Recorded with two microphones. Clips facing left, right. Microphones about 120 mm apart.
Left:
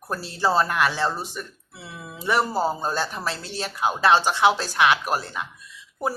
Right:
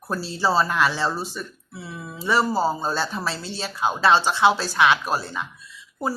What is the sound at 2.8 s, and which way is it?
Speech, 15° left (ahead or behind).